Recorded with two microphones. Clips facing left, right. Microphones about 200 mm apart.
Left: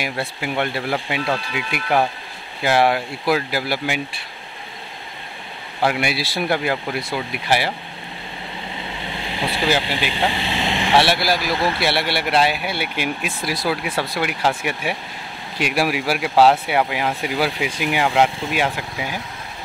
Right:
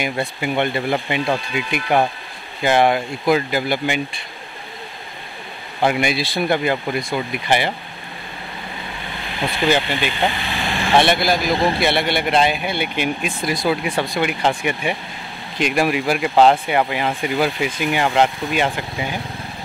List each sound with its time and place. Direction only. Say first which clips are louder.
0.0 s speech: right 3 dB; 5° left (ahead or behind)
5.9 s speech: right 3 dB; 5° left (ahead or behind)
9.5 s speech: right 3 dB; 5° left (ahead or behind)
10.3 s speech: left 2 dB; 25° left (ahead or behind)
11.0 s speech: right 3 dB; 5° left (ahead or behind)